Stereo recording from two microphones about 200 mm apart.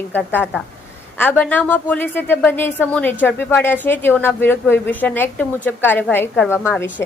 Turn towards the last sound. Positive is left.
turn(degrees=10)  # may be behind; listen again after turning